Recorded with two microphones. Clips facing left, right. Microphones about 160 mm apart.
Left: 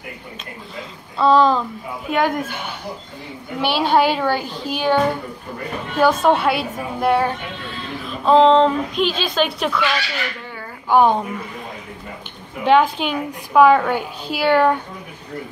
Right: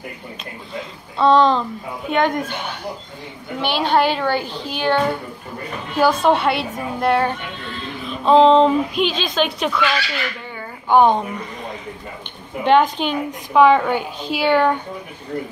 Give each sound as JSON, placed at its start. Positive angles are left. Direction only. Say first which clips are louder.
{"t": 1.1, "sound": "a woman's voice", "louder": "even", "side_deg": 5}
{"t": 3.6, "sound": "a woman's voice", "louder": "left 1 dB", "side_deg": 5}
{"t": 10.9, "sound": "a woman's voice", "louder": "right 1 dB", "side_deg": 5}
{"t": 12.6, "sound": "a woman's voice", "louder": "even", "side_deg": 5}